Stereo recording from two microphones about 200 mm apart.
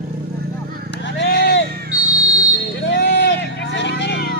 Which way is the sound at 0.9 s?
60° left (ahead or behind).